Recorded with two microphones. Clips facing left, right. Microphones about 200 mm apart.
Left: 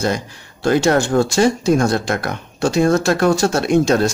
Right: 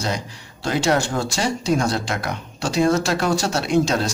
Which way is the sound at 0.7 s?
50° left (ahead or behind).